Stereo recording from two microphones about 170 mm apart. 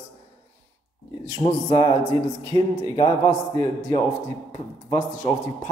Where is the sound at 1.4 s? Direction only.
35° left (ahead or behind).